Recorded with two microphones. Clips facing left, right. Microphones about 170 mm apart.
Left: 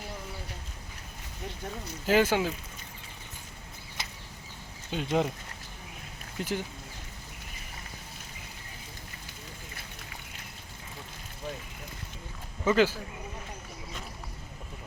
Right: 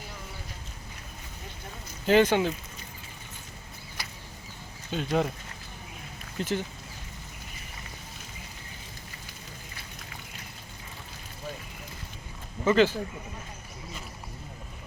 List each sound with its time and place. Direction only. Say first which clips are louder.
2.0 s speech: right 3 dB; 5° left (ahead or behind)
4.0 s a sound: even; 20° left (ahead or behind)
4.9 s speech: right 1 dB; 15° left (ahead or behind)
6.4 s speech: right 3 dB; 10° left (ahead or behind)
12.6 s speech: right 2 dB; 10° left (ahead or behind)